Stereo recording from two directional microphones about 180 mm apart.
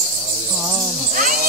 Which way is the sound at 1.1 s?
45° right (ahead or behind).